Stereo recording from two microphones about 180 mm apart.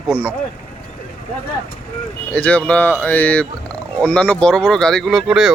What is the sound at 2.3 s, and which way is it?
Speech, 5° left (ahead or behind).